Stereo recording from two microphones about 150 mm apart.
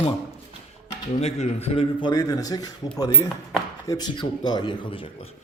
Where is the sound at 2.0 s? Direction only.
25° left (ahead or behind).